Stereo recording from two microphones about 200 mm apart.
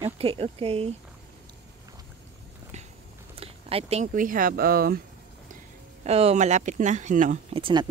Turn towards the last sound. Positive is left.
turn(degrees=-20)  # may be behind; listen again after turning